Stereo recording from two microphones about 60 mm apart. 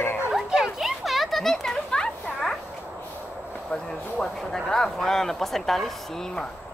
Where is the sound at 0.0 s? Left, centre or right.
Left.